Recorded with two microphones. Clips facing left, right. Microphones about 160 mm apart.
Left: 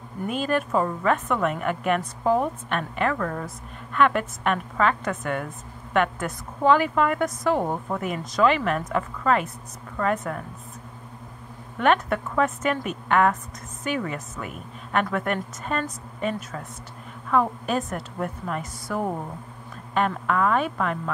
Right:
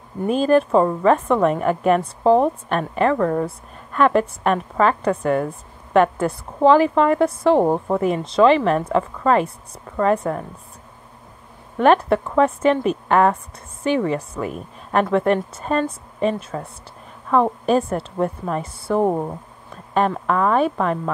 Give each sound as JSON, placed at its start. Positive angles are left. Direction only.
{"t": 0.3, "sound": "a woman's voice", "side_deg": -35}
{"t": 11.8, "sound": "a woman's voice", "side_deg": -35}
{"t": 19.0, "sound": "speech", "side_deg": -50}
{"t": 19.9, "sound": "a woman's voice", "side_deg": -35}